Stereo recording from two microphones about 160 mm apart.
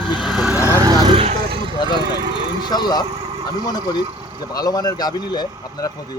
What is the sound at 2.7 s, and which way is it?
Speech, 25° left (ahead or behind).